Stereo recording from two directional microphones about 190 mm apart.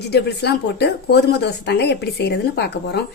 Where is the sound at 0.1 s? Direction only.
60° left (ahead or behind).